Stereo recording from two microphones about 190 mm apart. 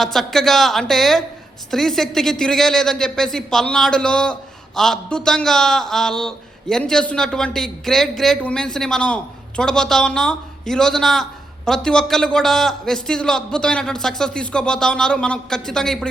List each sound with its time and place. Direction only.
0.0 s a woman's voice: centre (ahead or behind)